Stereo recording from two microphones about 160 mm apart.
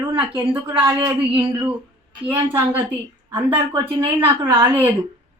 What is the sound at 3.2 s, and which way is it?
Speech, 15° right (ahead or behind).